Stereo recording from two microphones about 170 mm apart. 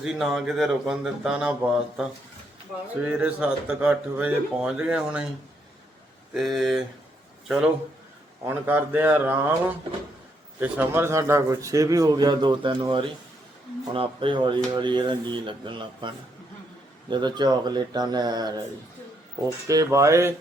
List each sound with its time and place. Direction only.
0.0 s speech: 5° right (ahead or behind)
3.1 s speech: 10° right (ahead or behind)
6.3 s speech: centre (ahead or behind); by 18.5 s 25° right (ahead or behind)
19.6 s speech: 20° right (ahead or behind)